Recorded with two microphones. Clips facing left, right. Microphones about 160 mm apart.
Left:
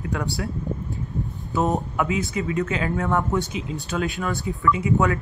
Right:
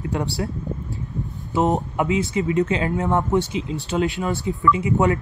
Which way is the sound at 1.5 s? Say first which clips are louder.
Right 3 dB; 20° right (ahead or behind).